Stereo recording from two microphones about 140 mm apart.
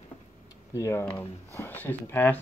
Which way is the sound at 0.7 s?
20° left (ahead or behind).